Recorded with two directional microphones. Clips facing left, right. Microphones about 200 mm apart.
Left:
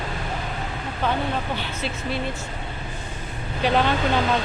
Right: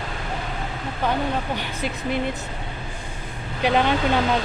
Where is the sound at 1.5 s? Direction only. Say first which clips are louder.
Right 1 dB; 15° right (ahead or behind).